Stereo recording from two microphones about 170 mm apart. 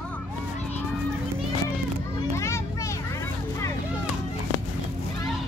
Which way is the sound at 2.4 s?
15° left (ahead or behind).